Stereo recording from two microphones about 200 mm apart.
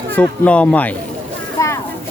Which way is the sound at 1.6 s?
15° left (ahead or behind).